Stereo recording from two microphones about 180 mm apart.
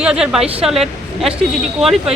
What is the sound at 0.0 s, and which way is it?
Speech, 5° right (ahead or behind).